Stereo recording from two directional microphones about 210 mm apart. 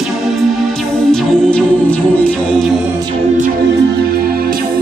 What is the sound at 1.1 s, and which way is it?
Music, 5° left (ahead or behind).